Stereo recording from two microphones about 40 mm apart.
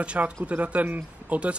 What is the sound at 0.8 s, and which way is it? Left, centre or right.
Speech, right.